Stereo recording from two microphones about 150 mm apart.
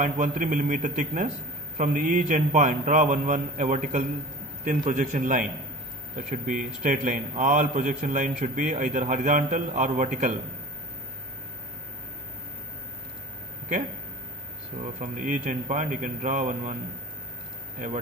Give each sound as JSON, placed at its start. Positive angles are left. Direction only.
{"t": 0.0, "sound": "a man's voice", "side_deg": -65}
{"t": 15.0, "sound": "a man's voice", "side_deg": -60}